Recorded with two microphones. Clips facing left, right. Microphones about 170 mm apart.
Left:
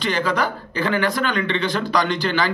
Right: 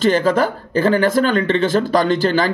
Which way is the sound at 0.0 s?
45° right (ahead or behind).